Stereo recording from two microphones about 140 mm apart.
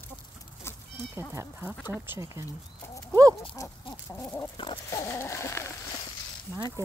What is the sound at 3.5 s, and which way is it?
Chicken, 20° left (ahead or behind).